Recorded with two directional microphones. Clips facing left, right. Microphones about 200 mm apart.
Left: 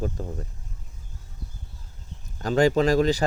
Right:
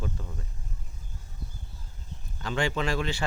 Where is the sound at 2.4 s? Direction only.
40° left (ahead or behind).